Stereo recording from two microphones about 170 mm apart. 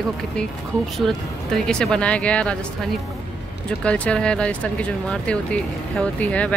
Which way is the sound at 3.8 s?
5° left (ahead or behind).